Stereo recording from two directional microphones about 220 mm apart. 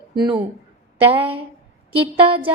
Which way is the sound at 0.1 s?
20° right (ahead or behind).